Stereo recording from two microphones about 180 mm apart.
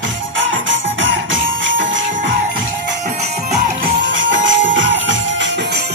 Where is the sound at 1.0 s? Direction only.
90° right.